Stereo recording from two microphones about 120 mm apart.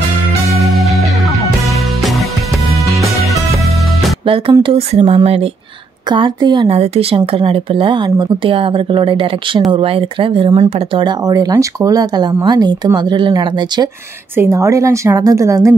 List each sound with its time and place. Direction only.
0.6 s music: centre (ahead or behind)
4.6 s speech: 50° right (ahead or behind)
6.0 s speech: 40° right (ahead or behind)
6.7 s speech: 55° right (ahead or behind); by 13.8 s 40° right (ahead or behind)
14.3 s a woman's voice: 25° right (ahead or behind)